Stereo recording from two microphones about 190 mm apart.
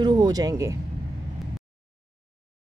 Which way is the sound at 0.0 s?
20° right (ahead or behind).